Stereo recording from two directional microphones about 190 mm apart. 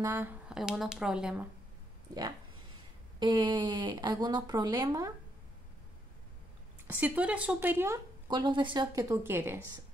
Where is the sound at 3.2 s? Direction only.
25° right (ahead or behind).